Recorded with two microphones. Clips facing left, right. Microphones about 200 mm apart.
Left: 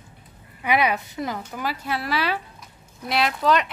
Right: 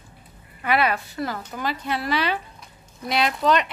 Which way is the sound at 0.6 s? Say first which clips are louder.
Even; 15° left (ahead or behind).